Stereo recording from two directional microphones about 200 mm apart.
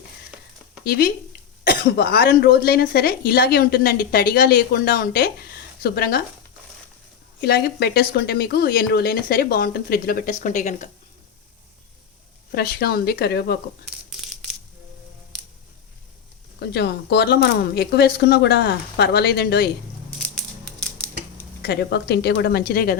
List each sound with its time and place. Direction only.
0.9 s speech: 50° left (ahead or behind)
7.4 s speech: 55° left (ahead or behind); by 10.8 s 35° left (ahead or behind)
12.5 s speech: 50° left (ahead or behind)
14.1 s a sound: centre (ahead or behind)
16.6 s speech: 55° left (ahead or behind)
21.6 s speech: 55° left (ahead or behind)